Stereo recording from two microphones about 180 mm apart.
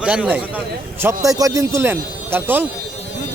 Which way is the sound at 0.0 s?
5° right (ahead or behind).